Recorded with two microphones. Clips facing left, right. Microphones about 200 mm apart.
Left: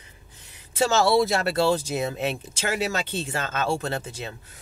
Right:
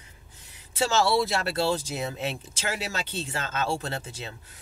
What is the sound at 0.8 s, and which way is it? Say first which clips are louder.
Speech: left 4 dB; 45° left (ahead or behind).